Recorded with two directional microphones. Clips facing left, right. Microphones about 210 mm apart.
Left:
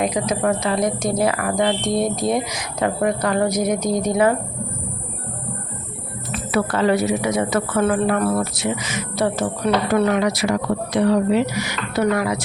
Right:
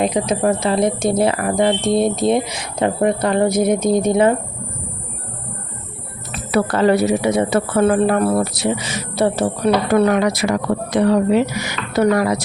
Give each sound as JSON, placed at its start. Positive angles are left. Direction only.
{"t": 0.0, "sound": "a woman's voice", "side_deg": -25}
{"t": 6.3, "sound": "a woman's voice", "side_deg": -40}
{"t": 9.9, "sound": "a woman's voice", "side_deg": -50}